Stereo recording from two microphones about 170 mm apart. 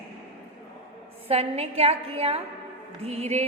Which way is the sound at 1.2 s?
35° right (ahead or behind).